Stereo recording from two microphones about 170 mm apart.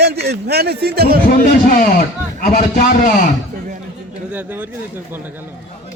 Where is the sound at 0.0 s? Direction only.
75° right (ahead or behind).